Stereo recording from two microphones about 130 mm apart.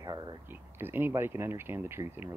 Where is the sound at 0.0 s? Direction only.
30° right (ahead or behind).